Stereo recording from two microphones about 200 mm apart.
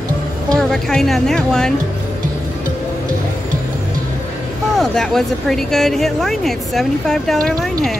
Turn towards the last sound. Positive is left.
turn(degrees=5)  # may be behind; listen again after turning